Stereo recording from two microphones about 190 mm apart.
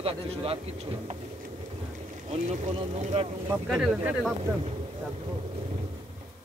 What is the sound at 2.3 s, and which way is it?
Speech, 40° right (ahead or behind).